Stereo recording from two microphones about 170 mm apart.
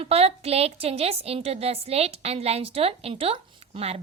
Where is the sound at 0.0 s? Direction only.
35° right (ahead or behind).